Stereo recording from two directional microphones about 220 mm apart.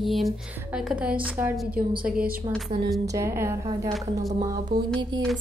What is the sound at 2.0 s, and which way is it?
Speech, 40° right (ahead or behind).